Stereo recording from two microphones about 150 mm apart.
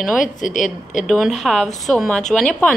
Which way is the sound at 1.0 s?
Centre (ahead or behind).